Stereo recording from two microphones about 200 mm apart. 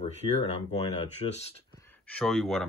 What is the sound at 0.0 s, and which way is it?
Speech, 30° left (ahead or behind).